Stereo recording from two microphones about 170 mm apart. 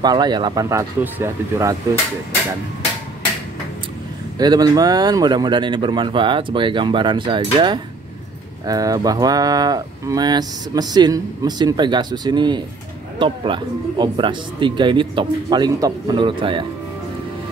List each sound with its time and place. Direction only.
0.0 s speech: 25° right (ahead or behind)
4.4 s speech: 20° right (ahead or behind)